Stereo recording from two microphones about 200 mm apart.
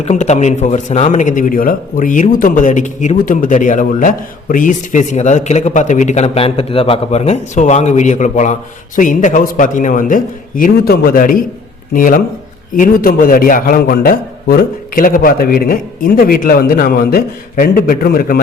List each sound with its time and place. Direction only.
0.0 s a man's voice: 35° left (ahead or behind)